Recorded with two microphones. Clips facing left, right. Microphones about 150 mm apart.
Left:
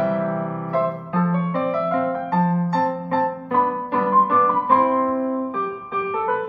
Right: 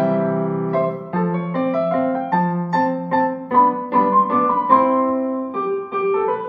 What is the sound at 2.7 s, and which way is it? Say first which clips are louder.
Music: right 3 dB; 40° right (ahead or behind).